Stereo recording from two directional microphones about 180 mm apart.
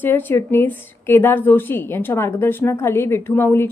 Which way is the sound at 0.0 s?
10° left (ahead or behind).